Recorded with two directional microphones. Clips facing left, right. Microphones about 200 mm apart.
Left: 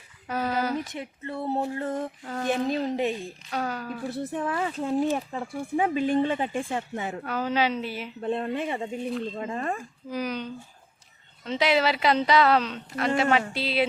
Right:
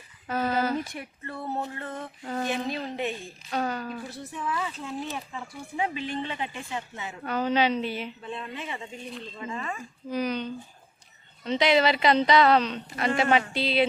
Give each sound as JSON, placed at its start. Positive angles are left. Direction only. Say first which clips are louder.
{"t": 0.3, "sound": "a sound", "louder": "right 1 dB", "side_deg": 10}
{"t": 2.2, "sound": "a woman's voice", "louder": "right 1 dB", "side_deg": -5}
{"t": 2.5, "sound": "a woman's voice", "louder": "left 5 dB", "side_deg": 45}
{"t": 3.5, "sound": "a woman's voice", "louder": "right 1 dB", "side_deg": 0}
{"t": 4.1, "sound": "speech", "louder": "left 5 dB", "side_deg": 55}
{"t": 7.3, "sound": "a woman's voice", "louder": "right 2 dB", "side_deg": 5}
{"t": 8.2, "sound": "speech", "louder": "left 9 dB", "side_deg": 55}
{"t": 10.1, "sound": "a woman's voice", "louder": "right 2 dB", "side_deg": 10}